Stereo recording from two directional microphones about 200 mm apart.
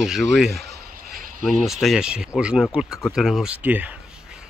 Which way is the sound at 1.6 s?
Centre (ahead or behind).